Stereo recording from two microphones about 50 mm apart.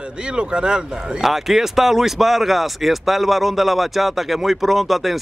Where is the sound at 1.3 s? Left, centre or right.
Centre.